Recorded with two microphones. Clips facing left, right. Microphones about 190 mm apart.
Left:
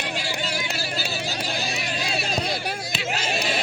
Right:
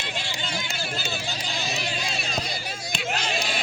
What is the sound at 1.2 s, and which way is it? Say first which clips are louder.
Vehicle: left 3 dB; 65° left (ahead or behind).